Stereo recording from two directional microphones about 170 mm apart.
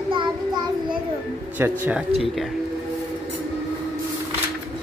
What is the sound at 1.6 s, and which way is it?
Speech, 10° right (ahead or behind).